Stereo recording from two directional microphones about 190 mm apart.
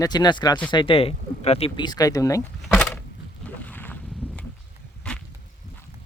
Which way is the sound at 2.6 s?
5° left (ahead or behind).